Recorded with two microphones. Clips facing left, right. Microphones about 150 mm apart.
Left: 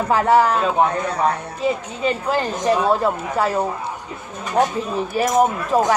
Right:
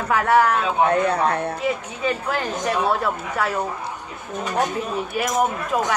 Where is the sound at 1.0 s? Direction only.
60° right (ahead or behind).